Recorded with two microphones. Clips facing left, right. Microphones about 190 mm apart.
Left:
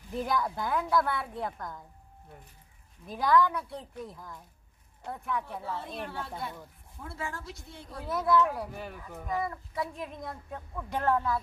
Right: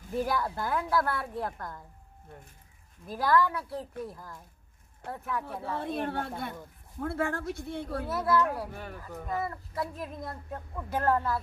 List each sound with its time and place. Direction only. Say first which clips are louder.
0.1 s speech: right 1 dB; 5° right (ahead or behind)
3.1 s speech: left 1 dB; centre (ahead or behind)
5.6 s speech: right 5 dB; 60° right (ahead or behind)
8.1 s speech: left 2 dB; centre (ahead or behind)